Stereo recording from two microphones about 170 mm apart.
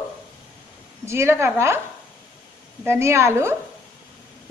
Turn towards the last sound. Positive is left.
turn(degrees=-15)  # may be behind; listen again after turning